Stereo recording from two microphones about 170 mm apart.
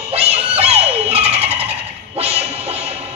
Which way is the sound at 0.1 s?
35° right (ahead or behind).